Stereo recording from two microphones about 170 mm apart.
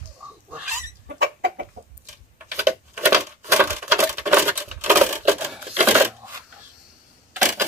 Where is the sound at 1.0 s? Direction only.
75° right (ahead or behind).